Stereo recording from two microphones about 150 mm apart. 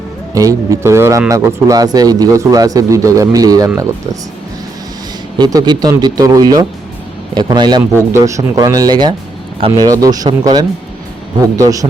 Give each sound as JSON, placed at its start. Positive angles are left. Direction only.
{"t": 0.3, "sound": "speech", "side_deg": -20}
{"t": 5.4, "sound": "speech", "side_deg": -25}
{"t": 7.9, "sound": "speech", "side_deg": -20}
{"t": 9.6, "sound": "speech", "side_deg": -40}
{"t": 9.8, "sound": "speech", "side_deg": -25}